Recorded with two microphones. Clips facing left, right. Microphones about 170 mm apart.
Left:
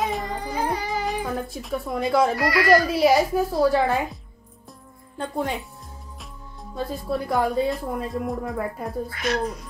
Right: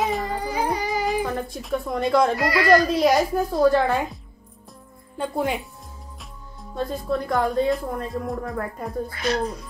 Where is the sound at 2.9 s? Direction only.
5° left (ahead or behind).